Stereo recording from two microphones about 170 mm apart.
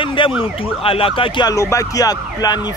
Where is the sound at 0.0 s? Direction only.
30° left (ahead or behind).